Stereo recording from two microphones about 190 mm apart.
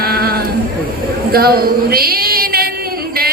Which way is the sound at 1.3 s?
55° right (ahead or behind).